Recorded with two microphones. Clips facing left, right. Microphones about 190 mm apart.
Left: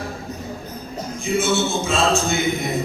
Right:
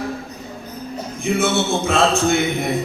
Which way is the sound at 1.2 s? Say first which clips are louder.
Right 1 dB; 60° right (ahead or behind).